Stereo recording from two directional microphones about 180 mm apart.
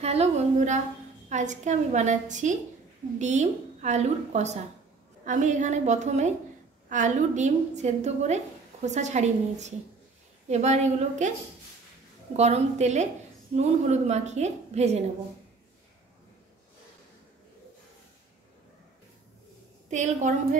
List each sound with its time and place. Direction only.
0.0 s a woman's voice: 35° right (ahead or behind)
12.4 s a woman's voice: 35° right (ahead or behind)
19.9 s a woman's voice: 40° right (ahead or behind)